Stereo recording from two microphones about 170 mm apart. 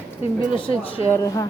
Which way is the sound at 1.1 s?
20° left (ahead or behind).